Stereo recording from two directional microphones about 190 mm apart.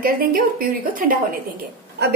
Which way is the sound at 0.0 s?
50° right (ahead or behind).